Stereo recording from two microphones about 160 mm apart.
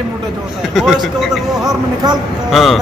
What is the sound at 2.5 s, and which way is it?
Speech, centre (ahead or behind).